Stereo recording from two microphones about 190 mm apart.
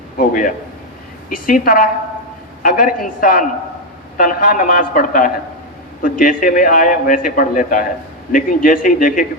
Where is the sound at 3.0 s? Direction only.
50° left (ahead or behind).